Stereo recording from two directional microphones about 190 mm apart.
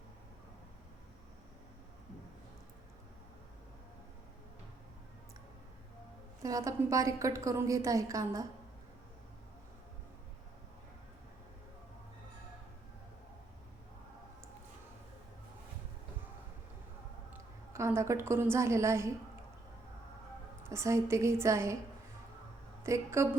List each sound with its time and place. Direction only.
6.4 s a woman's voice: 20° right (ahead or behind)
17.7 s a woman's voice: 15° right (ahead or behind)
20.7 s a woman's voice: 15° right (ahead or behind)
22.8 s a woman's voice: 15° right (ahead or behind)